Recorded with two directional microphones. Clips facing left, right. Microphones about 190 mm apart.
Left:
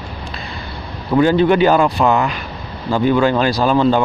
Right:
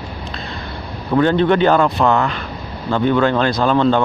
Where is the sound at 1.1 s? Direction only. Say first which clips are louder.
Left 2 dB; 5° left (ahead or behind).